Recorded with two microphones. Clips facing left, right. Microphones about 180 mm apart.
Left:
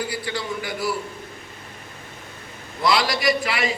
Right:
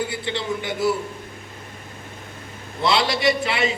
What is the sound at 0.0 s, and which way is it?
Speech, 25° right (ahead or behind).